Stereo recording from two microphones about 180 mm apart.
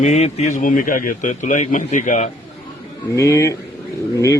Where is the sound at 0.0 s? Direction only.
40° left (ahead or behind).